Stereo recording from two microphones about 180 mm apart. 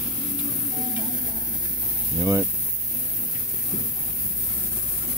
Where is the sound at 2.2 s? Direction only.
20° right (ahead or behind).